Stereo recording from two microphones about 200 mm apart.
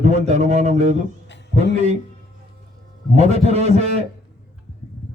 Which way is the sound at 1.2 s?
60° left (ahead or behind).